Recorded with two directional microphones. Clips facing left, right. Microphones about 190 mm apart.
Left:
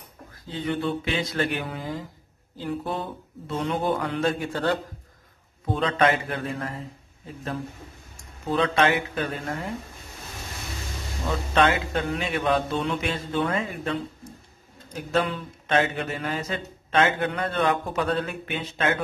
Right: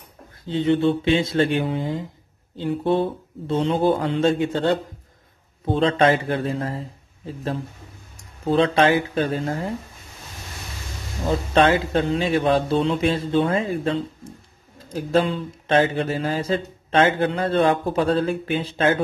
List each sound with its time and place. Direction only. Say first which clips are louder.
0.5 s speech: right 8 dB; 25° right (ahead or behind)
8.5 s speech: right 5 dB; 30° right (ahead or behind)
11.2 s speech: right 4 dB; 30° right (ahead or behind)